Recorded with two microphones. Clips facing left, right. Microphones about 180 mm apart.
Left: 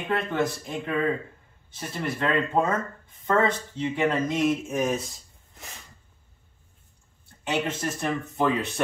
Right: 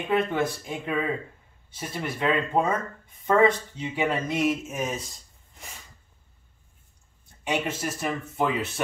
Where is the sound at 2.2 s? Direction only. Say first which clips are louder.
Even; 10° right (ahead or behind).